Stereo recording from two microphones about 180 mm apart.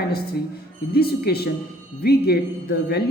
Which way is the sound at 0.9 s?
60° left (ahead or behind).